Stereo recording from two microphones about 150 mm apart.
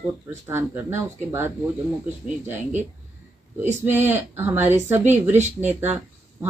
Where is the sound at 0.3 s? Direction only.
15° right (ahead or behind).